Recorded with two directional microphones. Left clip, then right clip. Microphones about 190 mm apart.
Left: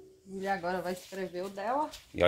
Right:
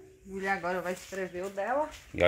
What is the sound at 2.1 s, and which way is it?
Speech, 5° left (ahead or behind).